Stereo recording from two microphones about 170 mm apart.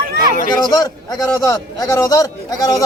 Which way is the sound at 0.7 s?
20° left (ahead or behind).